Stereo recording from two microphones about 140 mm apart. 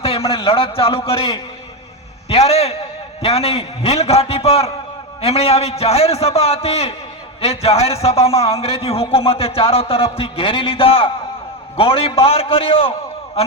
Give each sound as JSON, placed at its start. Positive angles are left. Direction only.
{"t": 0.0, "sound": "a man's voice", "side_deg": 45}
{"t": 2.3, "sound": "a man's voice", "side_deg": 45}